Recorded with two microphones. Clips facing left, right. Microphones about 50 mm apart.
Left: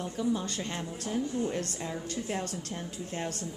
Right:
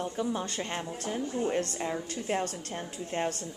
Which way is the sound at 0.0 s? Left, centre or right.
Right.